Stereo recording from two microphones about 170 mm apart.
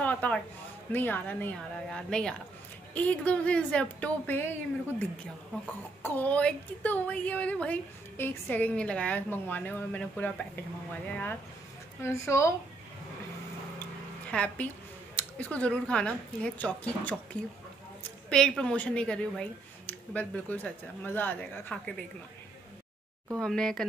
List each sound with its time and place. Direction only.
0.0 s a sound: 10° left (ahead or behind)
0.9 s a woman's voice: 10° left (ahead or behind)
6.0 s a woman's voice: 10° left (ahead or behind)
12.0 s a woman's voice: 15° left (ahead or behind)
14.3 s a woman's voice: 5° left (ahead or behind)
23.4 s a woman's voice: 5° left (ahead or behind)